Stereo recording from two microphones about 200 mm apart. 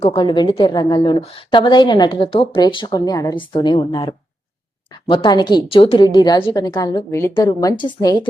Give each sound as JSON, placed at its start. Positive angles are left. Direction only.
{"t": 0.0, "sound": "a woman's voice", "side_deg": 30}